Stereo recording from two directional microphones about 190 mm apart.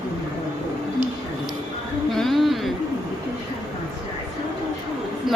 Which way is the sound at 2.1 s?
Centre (ahead or behind).